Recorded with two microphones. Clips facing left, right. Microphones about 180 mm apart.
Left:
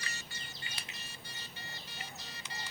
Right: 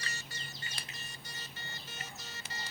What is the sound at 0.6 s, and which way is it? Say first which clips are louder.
Music: even; 40° right (ahead or behind).